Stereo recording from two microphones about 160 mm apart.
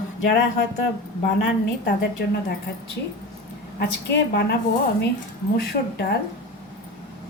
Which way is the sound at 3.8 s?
90° left.